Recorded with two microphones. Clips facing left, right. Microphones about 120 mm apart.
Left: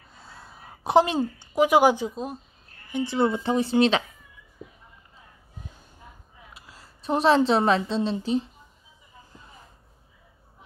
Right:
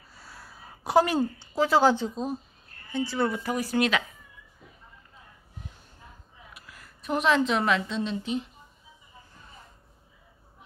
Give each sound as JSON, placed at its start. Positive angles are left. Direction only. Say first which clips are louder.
{"t": 0.1, "sound": "a sound", "louder": "left 2 dB", "side_deg": 25}
{"t": 0.8, "sound": "speech", "louder": "left 2 dB", "side_deg": 20}
{"t": 2.9, "sound": "speech", "louder": "left 3 dB", "side_deg": 20}
{"t": 6.5, "sound": "a woman's voice", "louder": "left 1 dB", "side_deg": 25}